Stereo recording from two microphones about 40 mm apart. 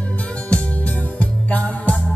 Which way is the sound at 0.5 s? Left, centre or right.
Left.